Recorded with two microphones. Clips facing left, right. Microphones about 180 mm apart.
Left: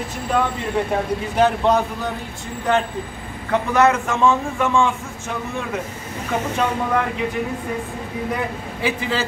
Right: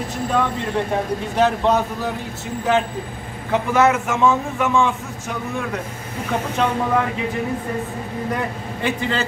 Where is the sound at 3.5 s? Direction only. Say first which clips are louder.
Even; 5° right (ahead or behind).